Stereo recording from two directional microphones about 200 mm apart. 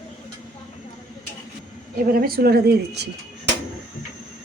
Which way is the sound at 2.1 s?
50° right (ahead or behind).